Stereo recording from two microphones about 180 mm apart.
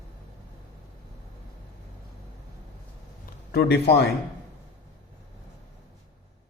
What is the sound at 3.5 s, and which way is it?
Speech, 65° left (ahead or behind).